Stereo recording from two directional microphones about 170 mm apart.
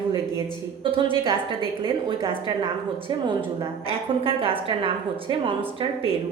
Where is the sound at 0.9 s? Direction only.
30° right (ahead or behind).